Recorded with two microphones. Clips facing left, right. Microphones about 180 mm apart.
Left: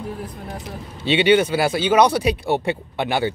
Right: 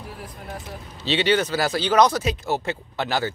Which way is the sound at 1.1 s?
10° left (ahead or behind).